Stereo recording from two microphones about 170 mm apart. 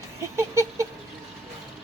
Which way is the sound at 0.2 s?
15° right (ahead or behind).